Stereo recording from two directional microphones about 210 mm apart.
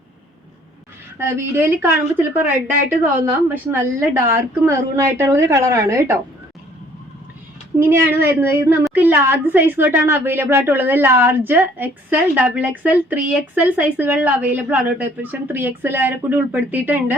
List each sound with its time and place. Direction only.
1.2 s speech: 10° right (ahead or behind)
7.8 s speech: 10° right (ahead or behind)